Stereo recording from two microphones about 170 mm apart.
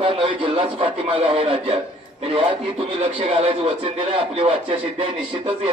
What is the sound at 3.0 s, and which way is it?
Speech, 35° right (ahead or behind).